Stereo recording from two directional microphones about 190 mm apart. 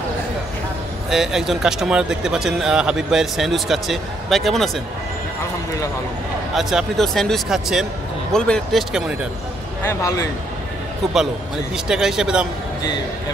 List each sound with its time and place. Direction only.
1.1 s speech: centre (ahead or behind)
6.5 s speech: centre (ahead or behind)
9.8 s a man's voice: 15° left (ahead or behind)
11.7 s speech: 5° right (ahead or behind)